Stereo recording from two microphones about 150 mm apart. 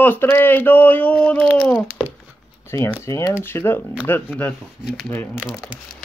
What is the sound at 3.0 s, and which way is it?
Speech, 20° left (ahead or behind).